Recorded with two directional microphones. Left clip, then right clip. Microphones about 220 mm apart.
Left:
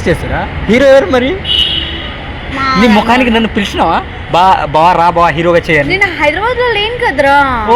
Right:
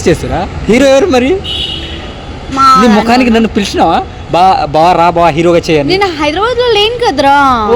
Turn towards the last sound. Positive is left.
turn(degrees=-55)  # may be behind; listen again after turning